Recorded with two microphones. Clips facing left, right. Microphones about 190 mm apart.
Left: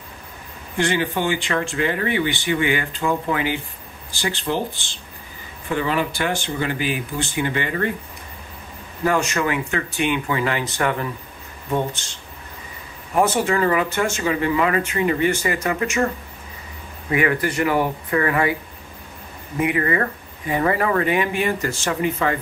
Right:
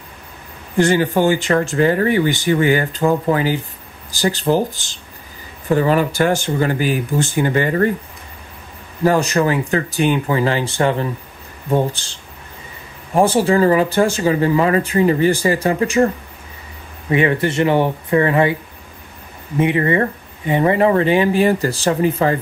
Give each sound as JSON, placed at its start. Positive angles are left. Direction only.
{"t": 0.7, "sound": "speech", "side_deg": -40}
{"t": 9.0, "sound": "speech", "side_deg": -35}
{"t": 17.1, "sound": "speech", "side_deg": -25}
{"t": 19.6, "sound": "speech", "side_deg": -25}